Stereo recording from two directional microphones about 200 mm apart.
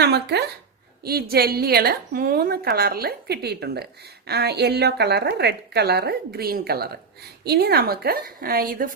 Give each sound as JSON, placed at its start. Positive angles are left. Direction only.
{"t": 0.0, "sound": "a woman's voice", "side_deg": -55}